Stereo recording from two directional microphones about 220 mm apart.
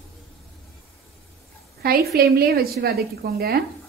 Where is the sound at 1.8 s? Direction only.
45° right (ahead or behind).